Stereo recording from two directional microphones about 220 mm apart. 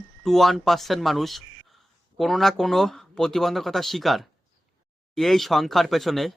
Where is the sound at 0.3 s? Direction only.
Centre (ahead or behind).